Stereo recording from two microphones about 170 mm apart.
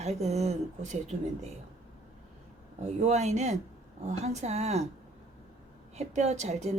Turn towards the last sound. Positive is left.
turn(degrees=-40)  # may be behind; listen again after turning